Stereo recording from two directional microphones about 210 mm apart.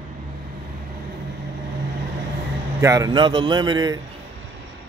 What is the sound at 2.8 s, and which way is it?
Speech, 15° right (ahead or behind).